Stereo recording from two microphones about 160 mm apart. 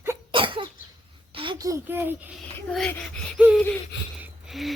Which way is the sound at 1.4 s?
25° right (ahead or behind).